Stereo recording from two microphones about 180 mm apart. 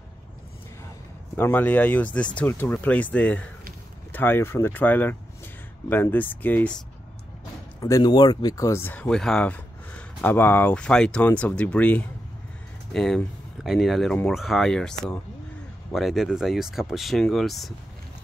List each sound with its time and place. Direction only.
1.3 s speech: 10° left (ahead or behind)
7.8 s speech: 20° left (ahead or behind); by 17.7 s centre (ahead or behind)